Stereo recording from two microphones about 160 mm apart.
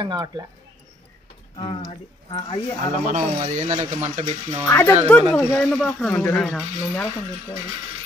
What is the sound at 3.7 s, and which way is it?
Speech, 45° right (ahead or behind).